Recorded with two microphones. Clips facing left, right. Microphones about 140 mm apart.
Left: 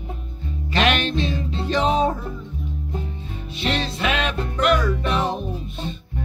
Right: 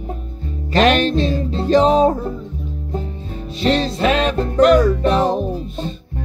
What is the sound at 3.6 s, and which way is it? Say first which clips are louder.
Music: right 7 dB; 35° right (ahead or behind).